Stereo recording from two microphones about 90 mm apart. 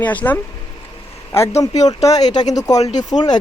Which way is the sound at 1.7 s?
45° left (ahead or behind).